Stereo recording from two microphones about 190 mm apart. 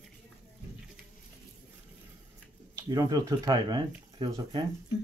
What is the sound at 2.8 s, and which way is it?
Speech, 20° right (ahead or behind).